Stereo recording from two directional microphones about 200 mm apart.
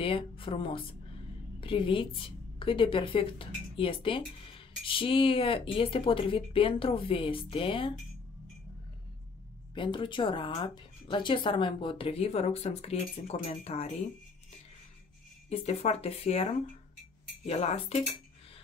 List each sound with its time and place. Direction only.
0.0 s a woman's voice: 25° left (ahead or behind)
9.8 s a woman's voice: 25° left (ahead or behind)
15.5 s speech: 30° left (ahead or behind)
17.5 s speech: 30° left (ahead or behind)